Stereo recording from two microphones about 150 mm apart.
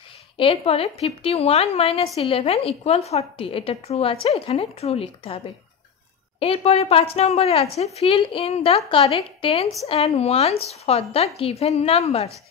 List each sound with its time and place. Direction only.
0.4 s a woman's voice: 40° left (ahead or behind)
6.4 s a woman's voice: 40° left (ahead or behind)